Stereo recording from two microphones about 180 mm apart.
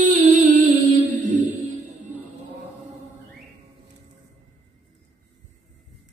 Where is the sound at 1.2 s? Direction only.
40° right (ahead or behind).